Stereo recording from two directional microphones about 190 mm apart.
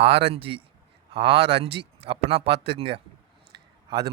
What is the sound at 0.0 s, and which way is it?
A man's voice, 30° right (ahead or behind).